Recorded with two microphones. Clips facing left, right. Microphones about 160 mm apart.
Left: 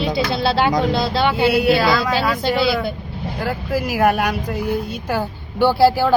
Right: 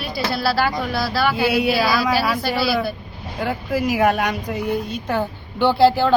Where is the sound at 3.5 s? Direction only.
5° left (ahead or behind).